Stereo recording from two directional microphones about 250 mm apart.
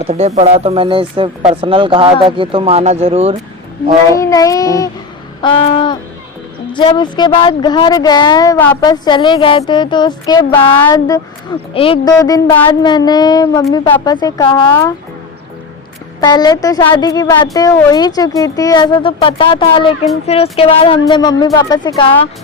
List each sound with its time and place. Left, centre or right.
0.1 s speech: right
4.1 s speech: centre
16.2 s speech: centre